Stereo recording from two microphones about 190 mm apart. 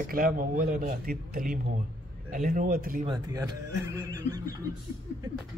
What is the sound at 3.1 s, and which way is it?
Speech, 20° right (ahead or behind).